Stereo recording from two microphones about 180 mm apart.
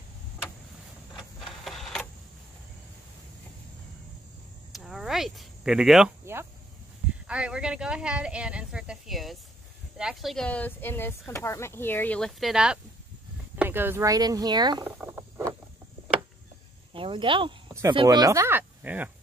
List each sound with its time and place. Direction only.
1.1 s printer: centre (ahead or behind)
4.7 s a sound: centre (ahead or behind)
7.2 s speech: 5° right (ahead or behind); by 14.9 s 25° right (ahead or behind)
14.9 s rodents: 10° right (ahead or behind)
16.9 s speech: 30° right (ahead or behind); by 19.0 s 10° right (ahead or behind)